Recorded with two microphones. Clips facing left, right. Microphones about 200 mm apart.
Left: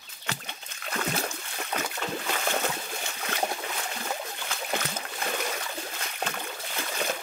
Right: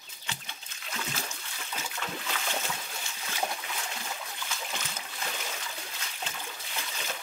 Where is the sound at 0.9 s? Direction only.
60° left (ahead or behind).